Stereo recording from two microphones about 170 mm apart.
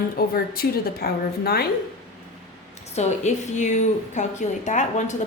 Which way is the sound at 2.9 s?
40° left (ahead or behind).